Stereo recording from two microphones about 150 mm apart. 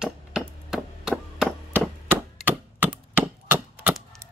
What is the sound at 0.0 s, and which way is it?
Chop, 5° right (ahead or behind).